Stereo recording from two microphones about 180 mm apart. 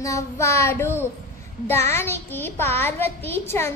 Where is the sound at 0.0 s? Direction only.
15° left (ahead or behind).